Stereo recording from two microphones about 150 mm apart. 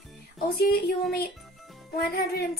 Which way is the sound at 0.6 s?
90° left.